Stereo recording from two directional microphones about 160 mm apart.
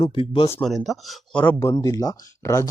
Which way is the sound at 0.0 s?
35° left (ahead or behind).